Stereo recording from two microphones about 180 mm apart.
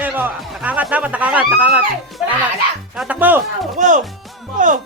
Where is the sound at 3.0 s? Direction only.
10° right (ahead or behind).